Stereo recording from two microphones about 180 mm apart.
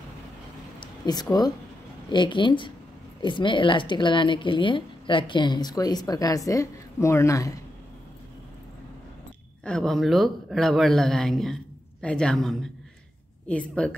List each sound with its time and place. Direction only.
0.7 s a sound: 20° left (ahead or behind)
2.0 s a woman's voice: 25° left (ahead or behind)
9.7 s speech: 5° left (ahead or behind)